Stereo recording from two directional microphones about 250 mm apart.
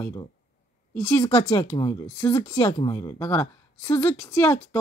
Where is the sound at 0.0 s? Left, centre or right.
Centre.